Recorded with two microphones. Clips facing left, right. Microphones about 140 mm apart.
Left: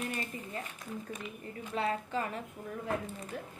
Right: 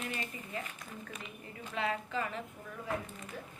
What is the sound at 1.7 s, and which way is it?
Speech, 35° left (ahead or behind).